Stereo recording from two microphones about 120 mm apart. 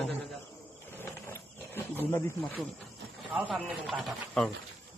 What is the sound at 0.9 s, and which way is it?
Wild animals, 20° left (ahead or behind).